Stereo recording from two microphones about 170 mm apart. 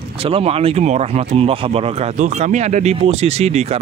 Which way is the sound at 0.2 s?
35° right (ahead or behind).